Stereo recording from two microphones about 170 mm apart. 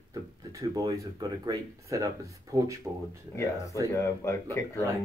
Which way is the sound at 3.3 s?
20° left (ahead or behind).